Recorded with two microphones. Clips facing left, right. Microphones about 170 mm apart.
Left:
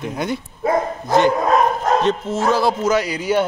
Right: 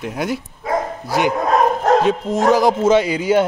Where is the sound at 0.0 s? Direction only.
5° right (ahead or behind).